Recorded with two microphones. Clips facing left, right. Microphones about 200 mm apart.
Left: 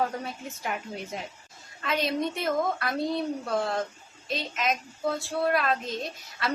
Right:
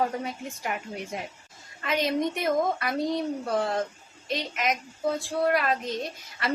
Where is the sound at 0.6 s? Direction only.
5° right (ahead or behind).